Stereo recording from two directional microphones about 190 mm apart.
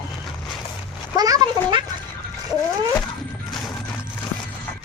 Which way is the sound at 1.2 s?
20° right (ahead or behind).